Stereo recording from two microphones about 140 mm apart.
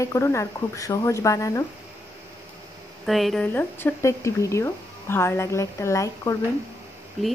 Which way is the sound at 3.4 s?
15° left (ahead or behind).